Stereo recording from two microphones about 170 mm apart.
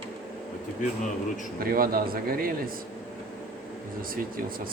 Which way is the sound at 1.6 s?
60° right (ahead or behind).